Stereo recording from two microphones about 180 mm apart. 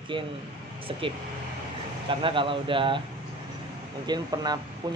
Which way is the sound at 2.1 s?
30° right (ahead or behind).